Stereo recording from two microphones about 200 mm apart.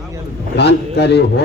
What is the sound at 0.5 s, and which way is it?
Speech, 55° left (ahead or behind).